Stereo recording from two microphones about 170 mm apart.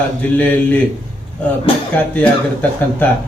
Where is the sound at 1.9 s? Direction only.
10° left (ahead or behind).